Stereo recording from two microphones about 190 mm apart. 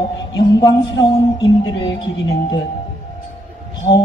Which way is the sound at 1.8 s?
70° left (ahead or behind).